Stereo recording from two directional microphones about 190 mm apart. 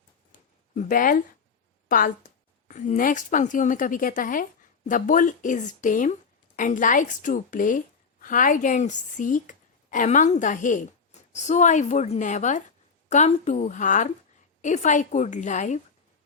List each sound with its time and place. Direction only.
0.8 s a woman's voice: 45° left (ahead or behind)